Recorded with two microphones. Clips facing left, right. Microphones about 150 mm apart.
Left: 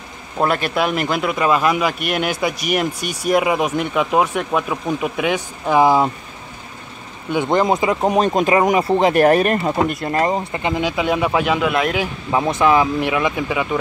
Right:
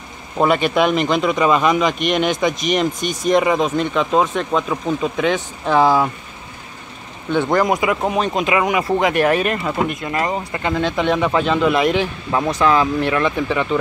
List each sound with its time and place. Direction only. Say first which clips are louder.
0.4 s a man's voice: right 3 dB; centre (ahead or behind); by 6.0 s 15° left (ahead or behind)
7.2 s speech: even; 10° left (ahead or behind)
7.6 s speech: left 1 dB; 25° left (ahead or behind)
8.4 s speech: left 3 dB; 40° left (ahead or behind)
10.3 s speech: left 1 dB; 15° left (ahead or behind)